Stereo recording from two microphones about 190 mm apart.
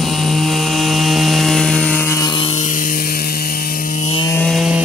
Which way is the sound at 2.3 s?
30° left (ahead or behind).